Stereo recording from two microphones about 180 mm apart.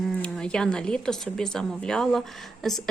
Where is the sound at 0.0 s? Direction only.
Centre (ahead or behind).